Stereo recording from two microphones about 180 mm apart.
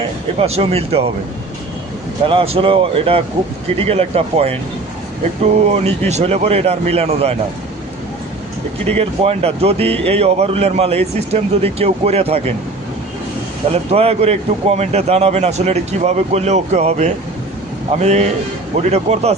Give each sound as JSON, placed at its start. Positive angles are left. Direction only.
{"t": 0.3, "sound": "a man's voice", "side_deg": -35}
{"t": 2.2, "sound": "a man's voice", "side_deg": -30}
{"t": 5.6, "sound": "a man's voice", "side_deg": -35}
{"t": 9.0, "sound": "a man's voice", "side_deg": -35}
{"t": 13.9, "sound": "a man's voice", "side_deg": -35}